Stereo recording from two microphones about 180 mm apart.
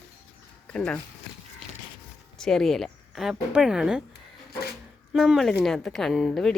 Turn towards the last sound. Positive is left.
turn(degrees=5)  # may be behind; listen again after turning